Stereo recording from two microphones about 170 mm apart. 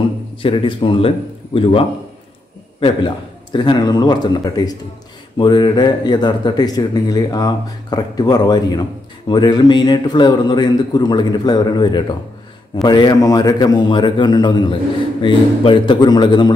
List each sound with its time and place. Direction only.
0.4 s a man's voice: 30° left (ahead or behind)
3.5 s speech: 25° left (ahead or behind)